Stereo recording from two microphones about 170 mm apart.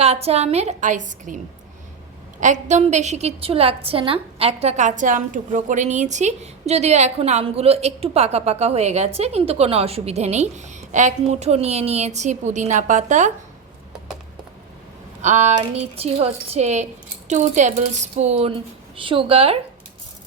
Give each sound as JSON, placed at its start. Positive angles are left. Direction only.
{"t": 0.0, "sound": "a woman's voice", "side_deg": -35}
{"t": 2.4, "sound": "a woman's voice", "side_deg": -45}
{"t": 15.2, "sound": "a woman's voice", "side_deg": -40}